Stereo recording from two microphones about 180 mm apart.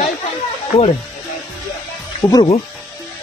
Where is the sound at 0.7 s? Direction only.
35° left (ahead or behind).